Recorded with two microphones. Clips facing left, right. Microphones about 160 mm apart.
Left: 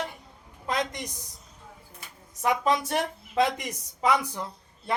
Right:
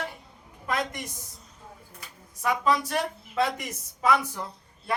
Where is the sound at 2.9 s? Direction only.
15° left (ahead or behind).